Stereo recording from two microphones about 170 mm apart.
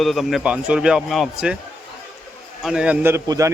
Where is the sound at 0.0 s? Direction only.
Centre (ahead or behind).